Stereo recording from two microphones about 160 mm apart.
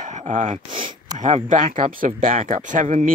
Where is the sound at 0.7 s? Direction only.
30° right (ahead or behind).